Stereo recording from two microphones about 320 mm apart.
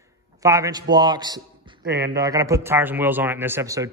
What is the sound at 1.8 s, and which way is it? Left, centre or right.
Speech, right.